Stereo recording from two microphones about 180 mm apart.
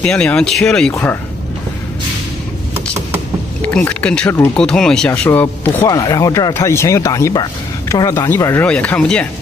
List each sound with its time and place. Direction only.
0.0 s speech: 5° left (ahead or behind)
3.6 s speech: 5° left (ahead or behind)